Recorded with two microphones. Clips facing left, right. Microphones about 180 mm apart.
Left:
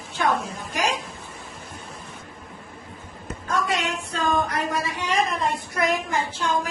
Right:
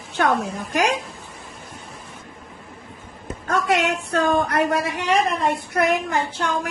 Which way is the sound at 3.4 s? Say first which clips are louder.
Right 5 dB; 60° right (ahead or behind).